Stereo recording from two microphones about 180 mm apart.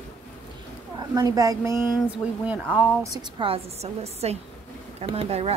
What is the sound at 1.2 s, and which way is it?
Speech, 20° right (ahead or behind).